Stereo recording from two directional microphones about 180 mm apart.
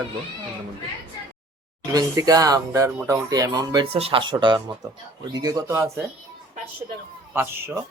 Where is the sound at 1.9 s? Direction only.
20° right (ahead or behind).